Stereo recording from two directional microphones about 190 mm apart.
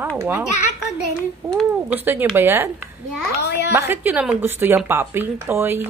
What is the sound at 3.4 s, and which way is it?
Speech, 60° left (ahead or behind).